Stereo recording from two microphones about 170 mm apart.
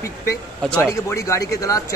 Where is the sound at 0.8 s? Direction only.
15° left (ahead or behind).